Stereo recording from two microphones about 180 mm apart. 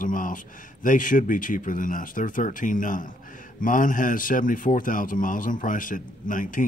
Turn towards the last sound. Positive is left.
turn(degrees=45)  # may be behind; listen again after turning